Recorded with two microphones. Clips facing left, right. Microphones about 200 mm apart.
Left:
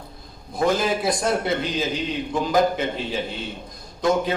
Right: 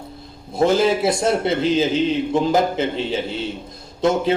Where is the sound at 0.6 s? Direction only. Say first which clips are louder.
Right 5 dB; 25° right (ahead or behind).